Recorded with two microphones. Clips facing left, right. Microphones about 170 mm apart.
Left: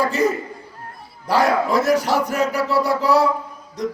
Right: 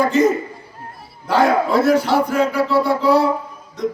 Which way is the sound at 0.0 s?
35° left (ahead or behind).